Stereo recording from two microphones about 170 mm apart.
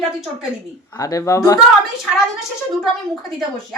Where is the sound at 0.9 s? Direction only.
20° left (ahead or behind).